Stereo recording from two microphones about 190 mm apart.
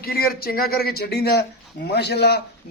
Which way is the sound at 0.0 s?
55° left (ahead or behind).